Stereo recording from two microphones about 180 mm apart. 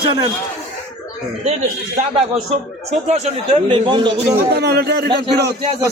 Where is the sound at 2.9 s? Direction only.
40° right (ahead or behind).